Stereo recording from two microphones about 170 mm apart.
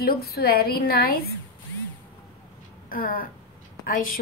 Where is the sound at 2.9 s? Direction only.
55° left (ahead or behind).